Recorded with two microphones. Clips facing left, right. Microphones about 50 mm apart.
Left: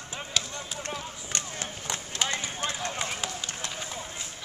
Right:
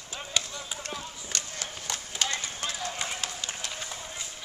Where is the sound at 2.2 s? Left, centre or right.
Left.